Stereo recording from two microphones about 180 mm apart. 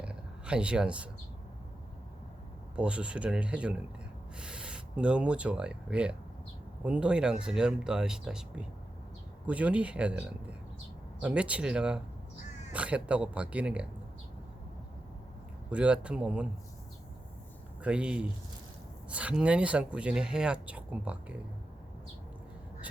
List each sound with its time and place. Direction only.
0.0 s a sound: 5° right (ahead or behind)
2.7 s speech: 5° right (ahead or behind)
15.7 s speech: 5° right (ahead or behind)
17.8 s speech: 5° right (ahead or behind)